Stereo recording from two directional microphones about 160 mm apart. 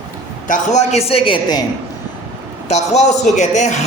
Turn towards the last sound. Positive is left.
turn(degrees=45)  # may be behind; listen again after turning